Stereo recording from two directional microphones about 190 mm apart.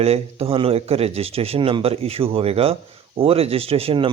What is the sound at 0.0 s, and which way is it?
A man's voice, 35° right (ahead or behind).